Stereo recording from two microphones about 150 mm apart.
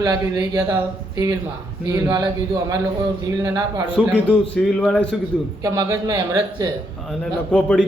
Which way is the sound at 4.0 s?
10° left (ahead or behind).